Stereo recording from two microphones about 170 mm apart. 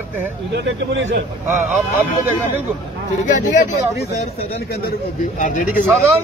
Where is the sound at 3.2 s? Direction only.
50° left (ahead or behind).